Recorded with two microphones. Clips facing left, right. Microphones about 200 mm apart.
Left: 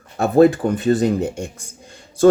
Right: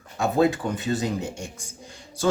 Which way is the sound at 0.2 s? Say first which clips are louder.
Left 8 dB; 55° left (ahead or behind).